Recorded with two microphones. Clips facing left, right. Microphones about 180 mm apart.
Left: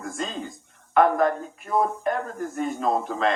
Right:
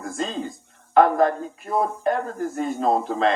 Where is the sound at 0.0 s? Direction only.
30° right (ahead or behind).